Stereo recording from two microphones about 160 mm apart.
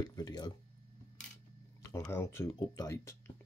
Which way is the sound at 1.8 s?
15° left (ahead or behind).